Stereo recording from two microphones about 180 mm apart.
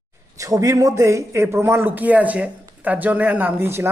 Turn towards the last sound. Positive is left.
turn(degrees=-15)  # may be behind; listen again after turning